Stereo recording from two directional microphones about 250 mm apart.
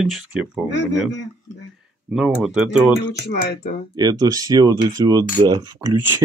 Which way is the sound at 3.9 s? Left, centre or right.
Centre.